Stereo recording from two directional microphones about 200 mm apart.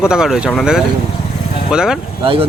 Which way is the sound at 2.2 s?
30° right (ahead or behind).